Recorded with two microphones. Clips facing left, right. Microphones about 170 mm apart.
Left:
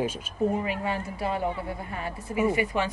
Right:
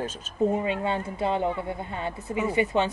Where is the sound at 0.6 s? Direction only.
25° right (ahead or behind).